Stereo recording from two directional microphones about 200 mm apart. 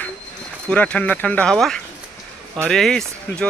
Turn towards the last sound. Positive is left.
turn(degrees=5)  # may be behind; listen again after turning